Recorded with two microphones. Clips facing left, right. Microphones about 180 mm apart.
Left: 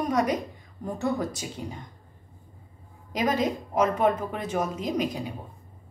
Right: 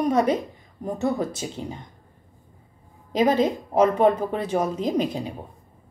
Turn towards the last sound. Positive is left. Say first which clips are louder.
# right 4 dB
turn(degrees=-30)  # may be behind; listen again after turning